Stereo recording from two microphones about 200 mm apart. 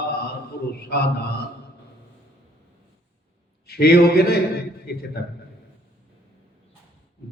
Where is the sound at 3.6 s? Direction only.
55° left (ahead or behind).